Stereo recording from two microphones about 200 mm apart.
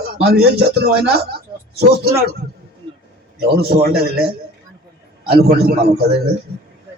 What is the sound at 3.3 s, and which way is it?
Speech, 50° right (ahead or behind).